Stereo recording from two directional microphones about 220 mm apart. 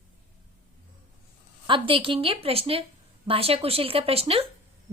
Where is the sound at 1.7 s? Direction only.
25° right (ahead or behind).